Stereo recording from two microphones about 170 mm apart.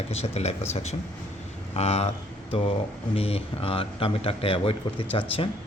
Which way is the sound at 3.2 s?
35° left (ahead or behind).